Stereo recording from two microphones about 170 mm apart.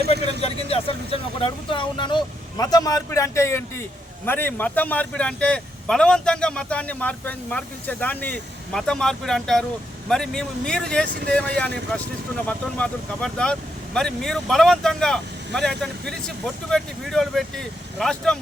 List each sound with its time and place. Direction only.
0.4 s a man's voice: 35° left (ahead or behind); by 18.3 s 5° left (ahead or behind)